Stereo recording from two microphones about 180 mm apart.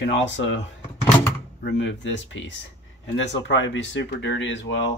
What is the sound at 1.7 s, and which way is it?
Speech, 85° left.